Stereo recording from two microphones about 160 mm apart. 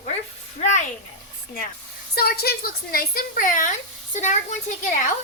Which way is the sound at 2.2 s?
75° left (ahead or behind).